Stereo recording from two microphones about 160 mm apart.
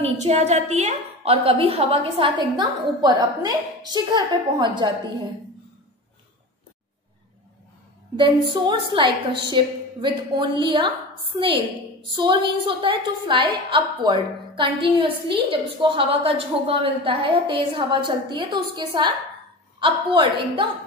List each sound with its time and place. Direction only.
0.0 s a woman's voice: 45° right (ahead or behind)
8.5 s a woman's voice: 30° right (ahead or behind)